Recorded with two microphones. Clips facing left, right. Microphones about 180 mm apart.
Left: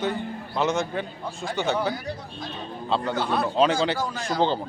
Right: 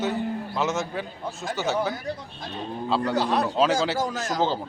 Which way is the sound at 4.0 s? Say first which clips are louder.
Right 1 dB; 45° right (ahead or behind).